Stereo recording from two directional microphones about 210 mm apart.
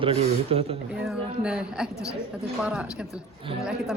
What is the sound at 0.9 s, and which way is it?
Speech, 5° right (ahead or behind).